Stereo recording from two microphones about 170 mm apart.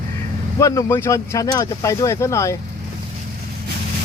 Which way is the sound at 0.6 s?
20° left (ahead or behind).